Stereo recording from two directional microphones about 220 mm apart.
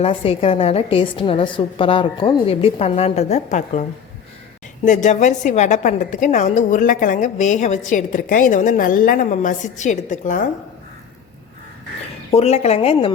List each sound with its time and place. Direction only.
0.0 s a woman's voice: 25° left (ahead or behind)
4.9 s a woman's voice: 35° left (ahead or behind)
12.3 s a woman's voice: 30° left (ahead or behind)